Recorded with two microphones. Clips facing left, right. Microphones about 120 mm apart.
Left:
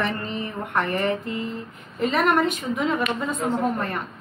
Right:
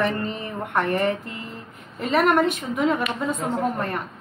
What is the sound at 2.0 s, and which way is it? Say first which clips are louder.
Speech: right 1 dB; 5° right (ahead or behind).